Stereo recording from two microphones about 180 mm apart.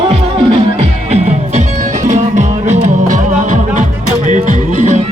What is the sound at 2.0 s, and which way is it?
Music, 40° right (ahead or behind).